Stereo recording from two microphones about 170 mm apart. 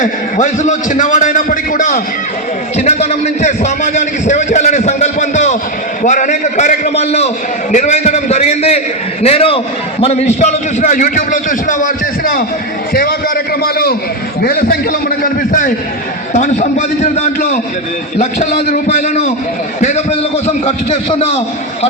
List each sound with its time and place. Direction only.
0.0 s a man's voice: 45° left (ahead or behind); by 13.9 s 65° left (ahead or behind)
15.2 s a man's voice: 50° left (ahead or behind)